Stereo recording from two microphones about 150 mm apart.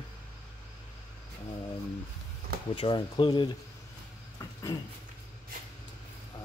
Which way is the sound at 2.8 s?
35° left (ahead or behind).